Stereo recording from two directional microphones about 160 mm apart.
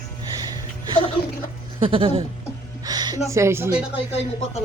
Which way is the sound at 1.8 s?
35° right (ahead or behind).